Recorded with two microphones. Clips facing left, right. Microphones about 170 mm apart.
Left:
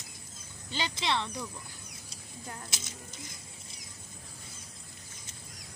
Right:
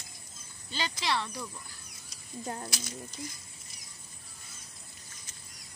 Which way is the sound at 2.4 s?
35° right (ahead or behind).